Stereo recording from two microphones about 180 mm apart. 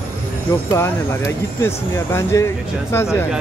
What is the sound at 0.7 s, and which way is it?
Speech, 15° left (ahead or behind).